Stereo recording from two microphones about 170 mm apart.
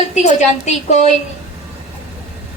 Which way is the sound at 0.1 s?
40° left (ahead or behind).